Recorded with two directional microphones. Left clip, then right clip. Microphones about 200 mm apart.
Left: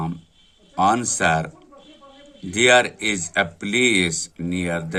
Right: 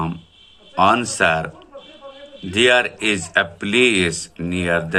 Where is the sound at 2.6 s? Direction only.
55° left (ahead or behind).